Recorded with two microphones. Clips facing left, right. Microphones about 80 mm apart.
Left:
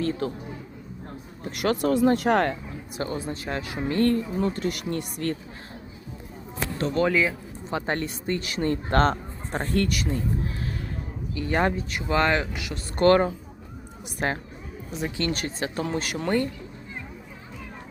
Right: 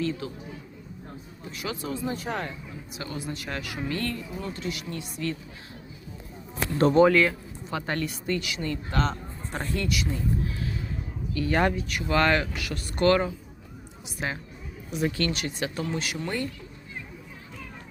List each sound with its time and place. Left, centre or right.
0.0 s speech: left
1.5 s speech: left
3.0 s speech: left
7.1 s speech: centre
7.7 s speech: left
9.5 s speech: left
9.7 s speech: left
11.3 s speech: left
13.0 s speech: left
15.0 s speech: left
15.3 s speech: left